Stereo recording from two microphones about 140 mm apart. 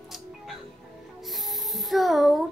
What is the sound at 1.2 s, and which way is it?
Music, centre (ahead or behind).